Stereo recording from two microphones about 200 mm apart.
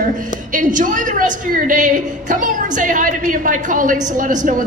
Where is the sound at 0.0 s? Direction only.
40° right (ahead or behind).